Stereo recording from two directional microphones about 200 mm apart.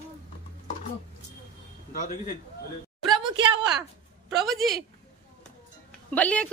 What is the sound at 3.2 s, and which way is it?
Speech, 25° right (ahead or behind).